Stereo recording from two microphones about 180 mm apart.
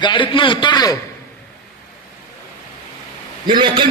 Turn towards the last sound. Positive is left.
turn(degrees=-25)  # may be behind; listen again after turning